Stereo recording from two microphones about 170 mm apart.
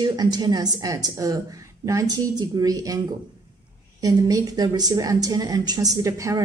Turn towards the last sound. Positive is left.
turn(degrees=-20)  # may be behind; listen again after turning